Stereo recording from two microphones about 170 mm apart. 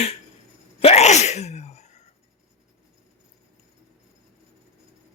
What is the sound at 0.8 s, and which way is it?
Sneeze, 35° left (ahead or behind).